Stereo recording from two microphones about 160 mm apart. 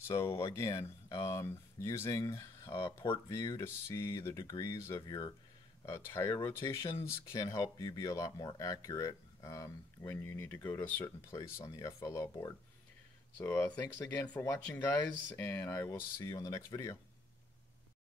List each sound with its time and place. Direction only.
0.0 s speech: 15° left (ahead or behind)